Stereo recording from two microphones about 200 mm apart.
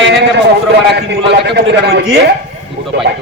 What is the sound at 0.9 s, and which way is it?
A man's voice, 55° right (ahead or behind).